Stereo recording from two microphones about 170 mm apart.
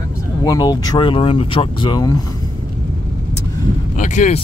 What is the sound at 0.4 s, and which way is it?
Speech, 25° left (ahead or behind).